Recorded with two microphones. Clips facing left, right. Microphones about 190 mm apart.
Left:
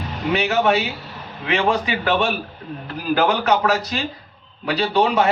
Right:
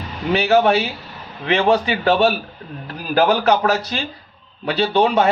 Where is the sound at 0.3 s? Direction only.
30° right (ahead or behind).